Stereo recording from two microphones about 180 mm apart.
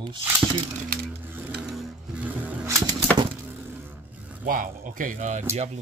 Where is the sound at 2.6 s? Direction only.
20° right (ahead or behind).